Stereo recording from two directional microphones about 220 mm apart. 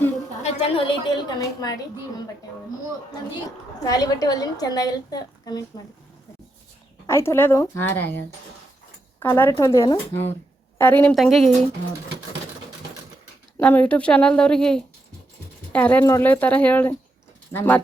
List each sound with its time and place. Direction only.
0.4 s a woman's voice: 20° left (ahead or behind)
3.8 s a woman's voice: 15° left (ahead or behind)
7.1 s a woman's voice: 10° left (ahead or behind)
9.2 s a woman's voice: 10° left (ahead or behind)
10.8 s a woman's voice: 10° left (ahead or behind)
13.6 s a woman's voice: 5° left (ahead or behind)